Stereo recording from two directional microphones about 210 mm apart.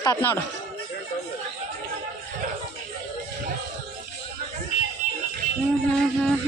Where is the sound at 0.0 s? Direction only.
15° left (ahead or behind).